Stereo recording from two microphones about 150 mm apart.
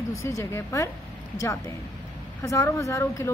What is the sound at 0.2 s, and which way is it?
A woman's voice, 20° left (ahead or behind).